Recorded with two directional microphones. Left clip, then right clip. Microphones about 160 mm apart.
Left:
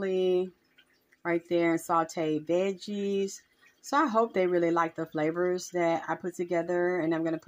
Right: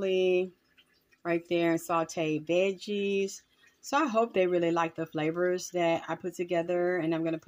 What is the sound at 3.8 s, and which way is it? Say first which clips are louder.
Speech: left 1 dB; 20° left (ahead or behind).